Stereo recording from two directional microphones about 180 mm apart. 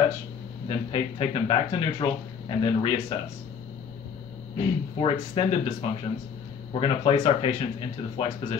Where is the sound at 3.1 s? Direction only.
30° left (ahead or behind).